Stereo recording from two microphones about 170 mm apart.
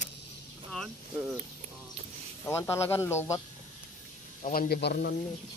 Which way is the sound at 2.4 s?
15° left (ahead or behind).